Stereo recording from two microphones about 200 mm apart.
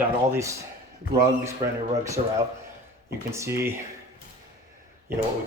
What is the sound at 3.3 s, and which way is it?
Speech, 15° right (ahead or behind).